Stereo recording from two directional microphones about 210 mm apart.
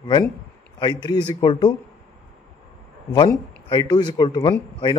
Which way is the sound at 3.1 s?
20° left (ahead or behind).